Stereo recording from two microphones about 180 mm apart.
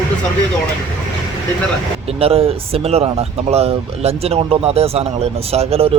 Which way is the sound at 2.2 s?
35° right (ahead or behind).